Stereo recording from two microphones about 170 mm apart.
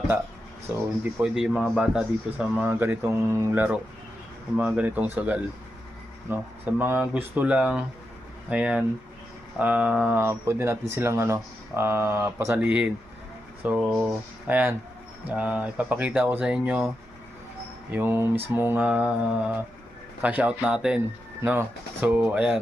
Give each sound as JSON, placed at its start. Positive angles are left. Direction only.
{"t": 0.7, "sound": "speech", "side_deg": -5}
{"t": 17.9, "sound": "speech", "side_deg": -10}
{"t": 22.0, "sound": "speech", "side_deg": -10}